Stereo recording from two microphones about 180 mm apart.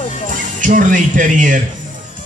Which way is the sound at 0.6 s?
45° right (ahead or behind).